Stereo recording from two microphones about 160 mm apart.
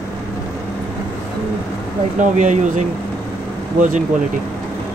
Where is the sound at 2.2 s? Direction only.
50° right (ahead or behind).